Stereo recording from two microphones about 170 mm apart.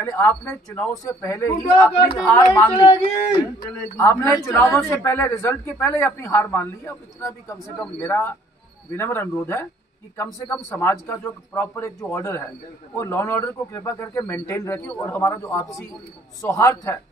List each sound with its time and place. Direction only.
0.0 s a man's voice: 15° left (ahead or behind)
2.0 s speech: 30° left (ahead or behind)
2.3 s a man's voice: 15° left (ahead or behind)
3.3 s speech: 25° left (ahead or behind)
3.9 s a man's voice: 10° left (ahead or behind)